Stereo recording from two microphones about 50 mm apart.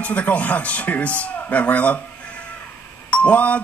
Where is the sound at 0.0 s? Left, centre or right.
Left.